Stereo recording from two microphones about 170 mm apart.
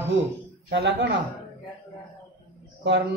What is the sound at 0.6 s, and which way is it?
Speech, 90° right.